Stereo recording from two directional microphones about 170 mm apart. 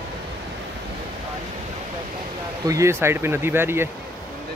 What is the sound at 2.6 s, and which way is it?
Speech, 15° right (ahead or behind).